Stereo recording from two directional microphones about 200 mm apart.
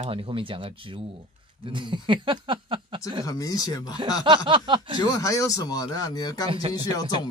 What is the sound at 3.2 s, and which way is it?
Speech, 15° left (ahead or behind).